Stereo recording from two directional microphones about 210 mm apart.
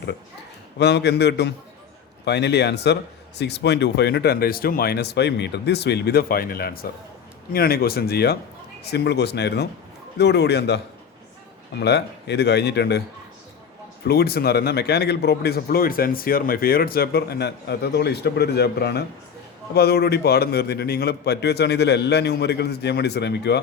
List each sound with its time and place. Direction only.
0.8 s speech: 55° left (ahead or behind)
11.8 s speech: 55° left (ahead or behind)
14.1 s speech: 50° left (ahead or behind)